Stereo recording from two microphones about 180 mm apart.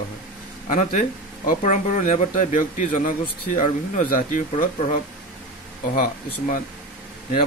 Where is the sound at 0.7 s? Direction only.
45° left (ahead or behind).